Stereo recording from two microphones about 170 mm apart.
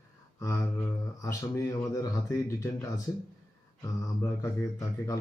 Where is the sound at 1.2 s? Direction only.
20° left (ahead or behind).